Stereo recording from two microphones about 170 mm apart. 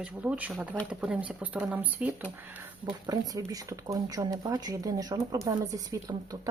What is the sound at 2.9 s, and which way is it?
A woman's voice, 20° right (ahead or behind).